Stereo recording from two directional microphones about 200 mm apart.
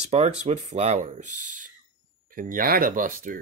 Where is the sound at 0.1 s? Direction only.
35° right (ahead or behind).